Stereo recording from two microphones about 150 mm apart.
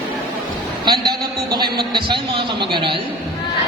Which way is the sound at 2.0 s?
30° right (ahead or behind).